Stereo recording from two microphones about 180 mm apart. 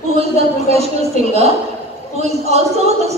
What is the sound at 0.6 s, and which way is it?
A woman's voice, 35° right (ahead or behind).